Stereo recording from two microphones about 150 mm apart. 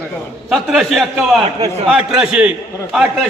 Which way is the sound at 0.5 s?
Centre (ahead or behind).